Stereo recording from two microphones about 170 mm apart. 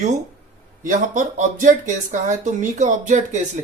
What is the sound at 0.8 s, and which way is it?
Speech, 50° right (ahead or behind).